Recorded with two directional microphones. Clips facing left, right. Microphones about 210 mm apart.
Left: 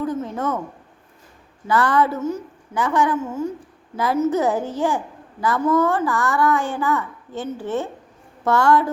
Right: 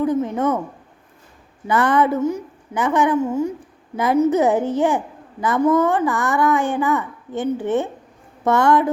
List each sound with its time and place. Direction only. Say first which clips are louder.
0.0 s a woman's voice: right 5 dB; 15° right (ahead or behind)
1.6 s a child's voice: right 2 dB; 20° right (ahead or behind)